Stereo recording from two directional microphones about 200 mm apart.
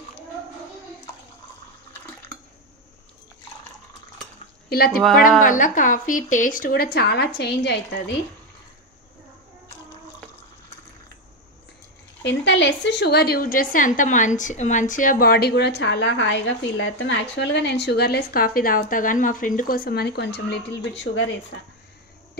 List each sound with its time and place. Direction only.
4.6 s a woman's voice: 50° left (ahead or behind)
12.3 s a woman's voice: 60° left (ahead or behind)